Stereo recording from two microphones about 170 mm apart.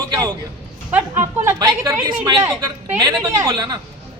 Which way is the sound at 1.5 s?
20° right (ahead or behind).